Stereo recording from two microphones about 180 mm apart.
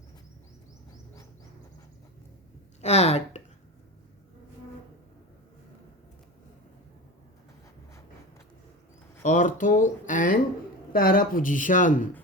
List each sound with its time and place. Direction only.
2.8 s speech: 35° left (ahead or behind)
9.2 s speech: 45° left (ahead or behind)